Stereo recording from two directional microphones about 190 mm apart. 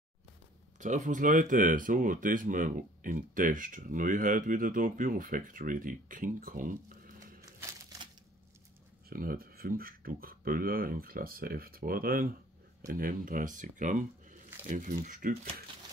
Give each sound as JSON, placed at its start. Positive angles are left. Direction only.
{"t": 0.7, "sound": "speech", "side_deg": -40}
{"t": 9.1, "sound": "speech", "side_deg": -50}